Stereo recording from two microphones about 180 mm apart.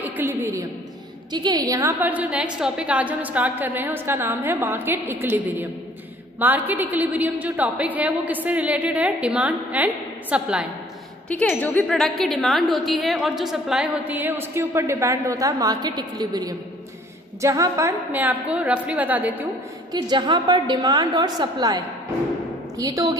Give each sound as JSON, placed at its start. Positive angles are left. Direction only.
{"t": 0.0, "sound": "a sound", "side_deg": -10}
{"t": 1.3, "sound": "a woman's voice", "side_deg": -25}
{"t": 11.2, "sound": "a woman's voice", "side_deg": 5}
{"t": 19.9, "sound": "a woman's voice", "side_deg": -25}